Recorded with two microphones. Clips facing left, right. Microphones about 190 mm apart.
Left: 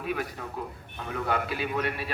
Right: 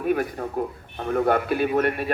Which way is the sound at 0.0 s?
50° right (ahead or behind).